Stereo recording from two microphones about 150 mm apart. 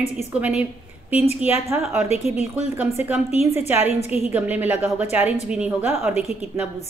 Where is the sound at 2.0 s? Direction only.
45° left (ahead or behind).